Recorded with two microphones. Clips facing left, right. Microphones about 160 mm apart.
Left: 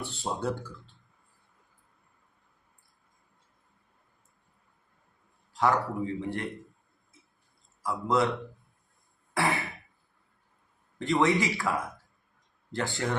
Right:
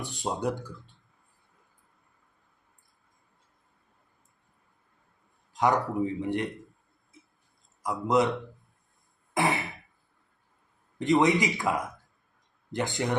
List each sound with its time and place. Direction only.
0.0 s speech: 15° right (ahead or behind)
5.5 s a man's voice: 20° right (ahead or behind)
7.8 s a man's voice: 20° right (ahead or behind)
9.3 s throat clearing: 20° right (ahead or behind)
10.9 s speech: 20° right (ahead or behind)